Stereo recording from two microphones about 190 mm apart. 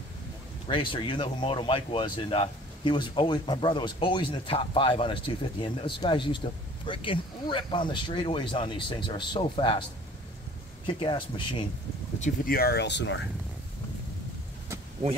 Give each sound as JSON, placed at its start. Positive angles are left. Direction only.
{"t": 0.7, "sound": "speech", "side_deg": 25}
{"t": 10.9, "sound": "speech", "side_deg": 25}
{"t": 12.2, "sound": "speech", "side_deg": 50}